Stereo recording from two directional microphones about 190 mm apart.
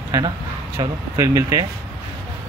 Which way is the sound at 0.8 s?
15° right (ahead or behind).